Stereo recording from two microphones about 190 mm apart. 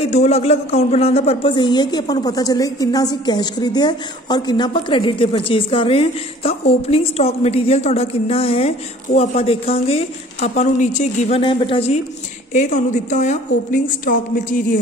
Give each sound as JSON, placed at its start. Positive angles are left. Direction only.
{"t": 0.0, "sound": "speech", "side_deg": 35}